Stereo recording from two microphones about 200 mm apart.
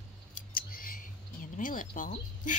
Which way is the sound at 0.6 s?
45° left (ahead or behind).